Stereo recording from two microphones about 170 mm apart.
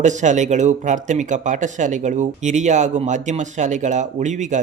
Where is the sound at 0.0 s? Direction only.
45° right (ahead or behind).